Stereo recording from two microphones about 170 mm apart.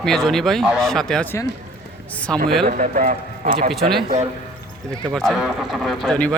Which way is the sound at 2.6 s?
50° right (ahead or behind).